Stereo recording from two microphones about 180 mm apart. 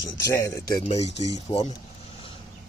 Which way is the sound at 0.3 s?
20° left (ahead or behind).